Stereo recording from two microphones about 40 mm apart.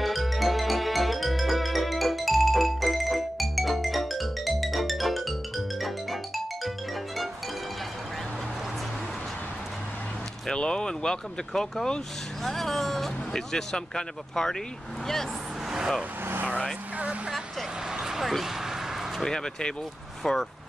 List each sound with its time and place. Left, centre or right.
0.0 s music: centre
10.5 s speech: left
12.4 s speech: centre
17.9 s a sound: centre
18.2 s a sound: centre
19.2 s speech: centre